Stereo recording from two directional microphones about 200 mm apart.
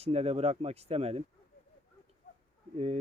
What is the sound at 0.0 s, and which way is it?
Speech, 30° right (ahead or behind).